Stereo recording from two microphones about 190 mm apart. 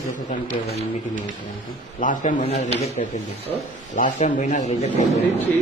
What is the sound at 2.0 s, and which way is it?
Speech, 45° left (ahead or behind).